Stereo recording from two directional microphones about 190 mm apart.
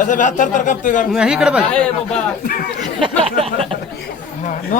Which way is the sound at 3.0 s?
30° right (ahead or behind).